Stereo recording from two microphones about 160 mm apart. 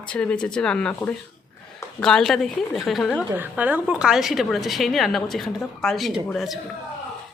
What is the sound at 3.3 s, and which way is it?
A woman's voice, 10° right (ahead or behind).